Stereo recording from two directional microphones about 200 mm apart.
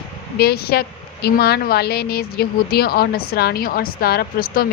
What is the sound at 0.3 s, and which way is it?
A woman's voice, 50° left (ahead or behind).